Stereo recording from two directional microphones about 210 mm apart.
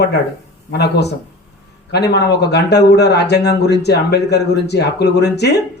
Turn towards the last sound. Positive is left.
turn(degrees=50)  # may be behind; listen again after turning